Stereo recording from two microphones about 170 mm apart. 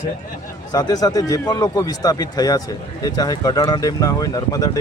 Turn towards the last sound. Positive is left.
turn(degrees=20)  # may be behind; listen again after turning